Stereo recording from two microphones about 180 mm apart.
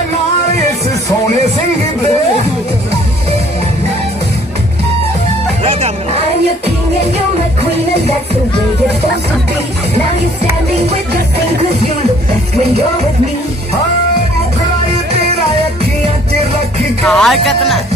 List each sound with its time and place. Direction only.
5.6 s music: 35° right (ahead or behind)
17.0 s music: 5° left (ahead or behind)